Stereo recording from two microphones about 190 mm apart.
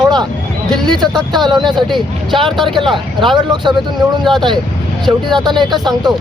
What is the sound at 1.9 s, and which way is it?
Speech, centre (ahead or behind).